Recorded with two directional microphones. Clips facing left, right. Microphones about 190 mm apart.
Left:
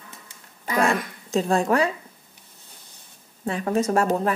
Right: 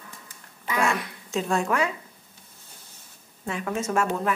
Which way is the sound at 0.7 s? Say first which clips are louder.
Left 3 dB; 35° left (ahead or behind).